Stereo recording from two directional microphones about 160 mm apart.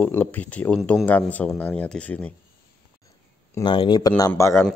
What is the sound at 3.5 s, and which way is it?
Speech, 30° left (ahead or behind).